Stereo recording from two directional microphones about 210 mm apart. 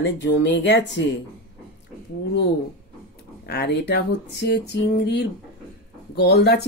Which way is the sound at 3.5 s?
50° left (ahead or behind).